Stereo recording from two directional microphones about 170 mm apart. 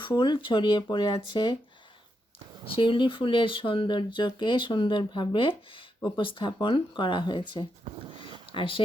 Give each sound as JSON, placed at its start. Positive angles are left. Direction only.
{"t": 0.2, "sound": "speech", "side_deg": 25}
{"t": 2.6, "sound": "speech", "side_deg": 30}